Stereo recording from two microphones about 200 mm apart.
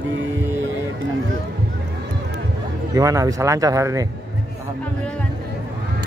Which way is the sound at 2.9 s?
15° right (ahead or behind).